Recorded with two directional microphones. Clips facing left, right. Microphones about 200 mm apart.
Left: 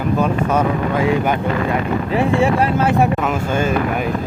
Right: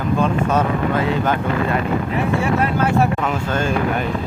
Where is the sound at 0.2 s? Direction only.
10° left (ahead or behind).